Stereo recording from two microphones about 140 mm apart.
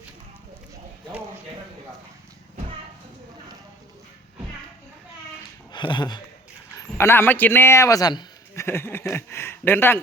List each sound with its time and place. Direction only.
5.7 s speech: 35° left (ahead or behind)
6.7 s a man's voice: 20° left (ahead or behind)